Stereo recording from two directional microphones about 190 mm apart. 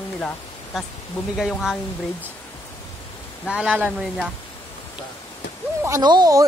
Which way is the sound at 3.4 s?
5° right (ahead or behind).